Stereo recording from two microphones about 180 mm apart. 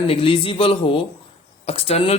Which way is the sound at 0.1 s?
30° left (ahead or behind).